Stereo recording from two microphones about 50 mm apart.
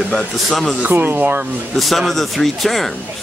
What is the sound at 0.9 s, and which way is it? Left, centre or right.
Speech, right.